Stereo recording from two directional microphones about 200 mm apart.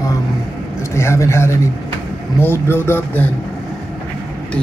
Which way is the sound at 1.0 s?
15° left (ahead or behind).